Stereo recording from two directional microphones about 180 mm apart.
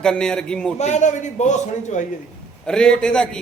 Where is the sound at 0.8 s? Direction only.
40° left (ahead or behind).